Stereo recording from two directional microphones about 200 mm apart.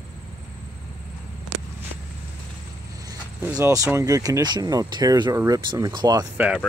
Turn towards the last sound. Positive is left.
turn(degrees=-15)  # may be behind; listen again after turning